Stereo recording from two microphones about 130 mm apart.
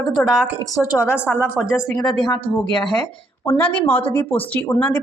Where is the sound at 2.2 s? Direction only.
35° left (ahead or behind).